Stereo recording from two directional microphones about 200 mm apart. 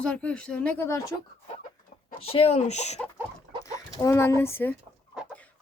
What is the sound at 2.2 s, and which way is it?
Speech, 30° left (ahead or behind).